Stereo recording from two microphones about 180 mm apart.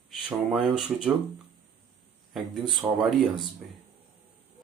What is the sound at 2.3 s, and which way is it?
Speech, centre (ahead or behind).